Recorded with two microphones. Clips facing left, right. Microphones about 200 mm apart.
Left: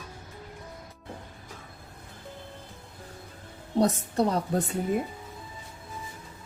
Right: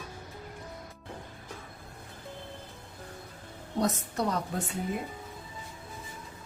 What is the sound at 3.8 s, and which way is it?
Speech, 30° left (ahead or behind).